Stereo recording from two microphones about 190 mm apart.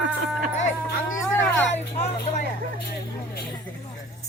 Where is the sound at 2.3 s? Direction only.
35° left (ahead or behind).